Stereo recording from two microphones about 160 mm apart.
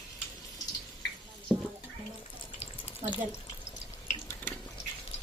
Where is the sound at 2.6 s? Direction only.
35° left (ahead or behind).